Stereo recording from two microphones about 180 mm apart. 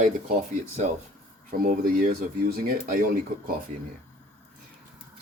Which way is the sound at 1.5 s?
55° right (ahead or behind).